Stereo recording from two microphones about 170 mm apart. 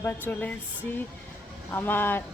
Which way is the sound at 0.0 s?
10° left (ahead or behind).